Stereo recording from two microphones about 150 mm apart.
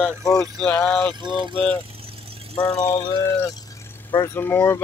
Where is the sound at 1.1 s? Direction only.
30° right (ahead or behind).